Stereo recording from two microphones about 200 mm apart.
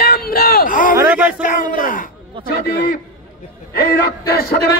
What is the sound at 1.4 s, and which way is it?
Speech, 40° left (ahead or behind).